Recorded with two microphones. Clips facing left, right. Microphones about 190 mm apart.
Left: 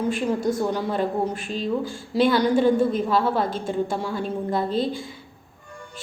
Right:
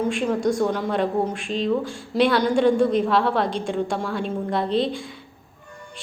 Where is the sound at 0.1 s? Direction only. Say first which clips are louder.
Right 1 dB; 5° left (ahead or behind).